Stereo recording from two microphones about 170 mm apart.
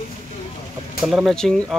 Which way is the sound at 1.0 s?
Centre (ahead or behind).